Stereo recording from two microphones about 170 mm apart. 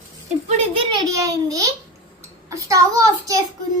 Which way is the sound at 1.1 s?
20° right (ahead or behind).